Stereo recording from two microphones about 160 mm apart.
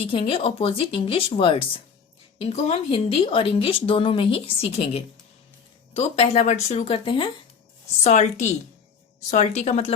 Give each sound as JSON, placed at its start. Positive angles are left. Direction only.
{"t": 0.0, "sound": "speech", "side_deg": 35}
{"t": 8.0, "sound": "a woman's voice", "side_deg": 45}